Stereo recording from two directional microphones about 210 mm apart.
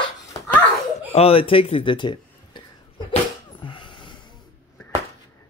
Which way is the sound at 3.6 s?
25° left (ahead or behind).